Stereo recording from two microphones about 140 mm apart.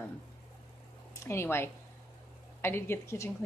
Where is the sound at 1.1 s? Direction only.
20° left (ahead or behind).